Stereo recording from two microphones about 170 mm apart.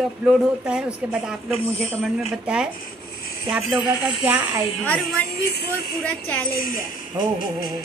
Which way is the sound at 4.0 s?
10° right (ahead or behind).